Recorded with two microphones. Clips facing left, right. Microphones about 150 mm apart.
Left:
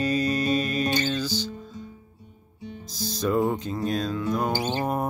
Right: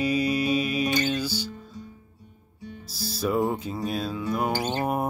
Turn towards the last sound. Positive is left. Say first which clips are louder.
# even
turn(degrees=-10)  # may be behind; listen again after turning